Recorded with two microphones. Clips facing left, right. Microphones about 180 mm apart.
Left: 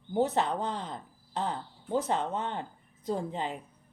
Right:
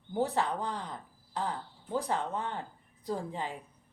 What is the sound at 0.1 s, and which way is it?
A woman's voice, 20° left (ahead or behind).